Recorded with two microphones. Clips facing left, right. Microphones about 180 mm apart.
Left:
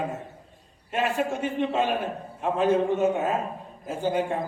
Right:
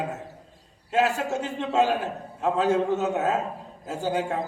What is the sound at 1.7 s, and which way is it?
A man's voice, 80° right.